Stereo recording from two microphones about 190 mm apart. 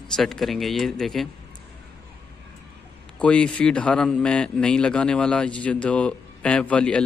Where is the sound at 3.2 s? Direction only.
5° left (ahead or behind).